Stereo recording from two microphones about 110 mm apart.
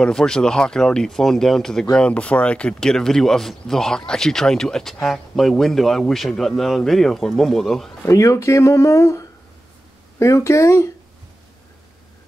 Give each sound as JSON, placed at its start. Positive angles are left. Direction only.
{"t": 0.0, "sound": "speech", "side_deg": 5}
{"t": 8.1, "sound": "speech", "side_deg": 30}